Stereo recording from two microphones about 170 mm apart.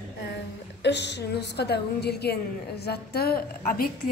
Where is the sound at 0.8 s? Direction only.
90° left.